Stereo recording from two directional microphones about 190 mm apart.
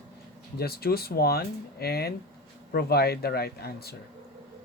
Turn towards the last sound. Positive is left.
turn(degrees=55)  # may be behind; listen again after turning